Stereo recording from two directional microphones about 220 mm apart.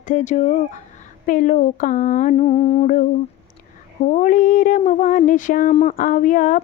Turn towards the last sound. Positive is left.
turn(degrees=35)  # may be behind; listen again after turning